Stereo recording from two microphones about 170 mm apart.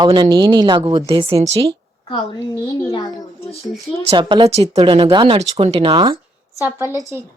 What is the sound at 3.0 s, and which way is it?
Speech, 35° left (ahead or behind).